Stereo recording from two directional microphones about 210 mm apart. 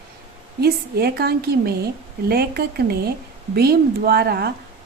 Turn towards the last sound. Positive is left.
turn(degrees=-50)  # may be behind; listen again after turning